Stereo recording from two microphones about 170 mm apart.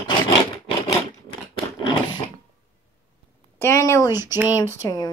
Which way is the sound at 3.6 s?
15° left (ahead or behind).